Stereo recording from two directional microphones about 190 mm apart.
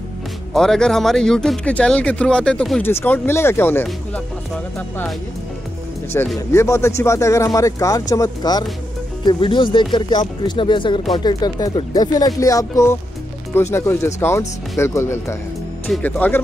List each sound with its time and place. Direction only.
0.5 s speech: centre (ahead or behind)
6.1 s speech: 15° left (ahead or behind)